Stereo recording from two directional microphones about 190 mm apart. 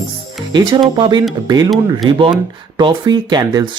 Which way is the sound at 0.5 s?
25° right (ahead or behind).